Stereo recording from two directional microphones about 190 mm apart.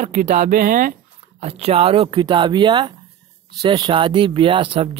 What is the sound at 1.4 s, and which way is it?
Speech, 30° right (ahead or behind).